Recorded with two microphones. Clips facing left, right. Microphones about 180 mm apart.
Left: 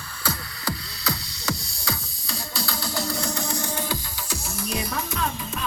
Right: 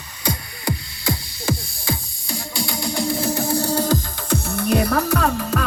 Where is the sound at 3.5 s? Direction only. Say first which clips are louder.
Right 9 dB; 35° right (ahead or behind).